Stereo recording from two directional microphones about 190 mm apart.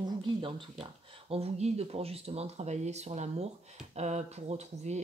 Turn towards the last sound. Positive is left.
turn(degrees=-35)  # may be behind; listen again after turning